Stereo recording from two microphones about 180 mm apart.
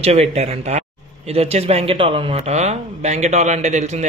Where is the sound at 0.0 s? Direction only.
35° right (ahead or behind).